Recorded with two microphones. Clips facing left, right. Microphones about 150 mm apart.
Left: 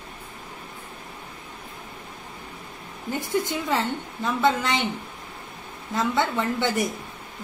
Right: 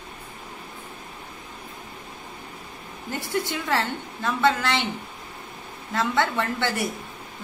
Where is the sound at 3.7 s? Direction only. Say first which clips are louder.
Even; 15° left (ahead or behind).